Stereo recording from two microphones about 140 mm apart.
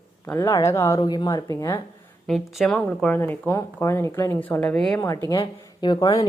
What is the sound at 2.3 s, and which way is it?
Speech, centre (ahead or behind).